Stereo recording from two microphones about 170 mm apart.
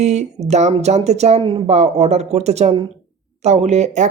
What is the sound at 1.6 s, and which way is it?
Speech, 40° right (ahead or behind).